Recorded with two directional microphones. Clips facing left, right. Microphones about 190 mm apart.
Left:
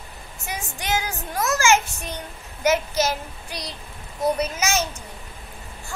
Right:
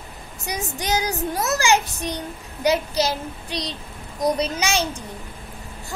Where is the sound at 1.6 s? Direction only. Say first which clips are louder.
Left 2 dB; 35° right (ahead or behind).